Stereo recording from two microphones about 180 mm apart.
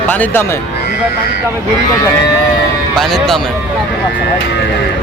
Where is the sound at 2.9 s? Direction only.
Centre (ahead or behind).